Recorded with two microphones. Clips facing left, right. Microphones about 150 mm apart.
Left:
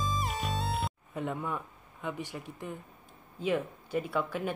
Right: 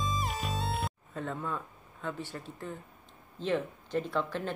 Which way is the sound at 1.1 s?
15° left (ahead or behind).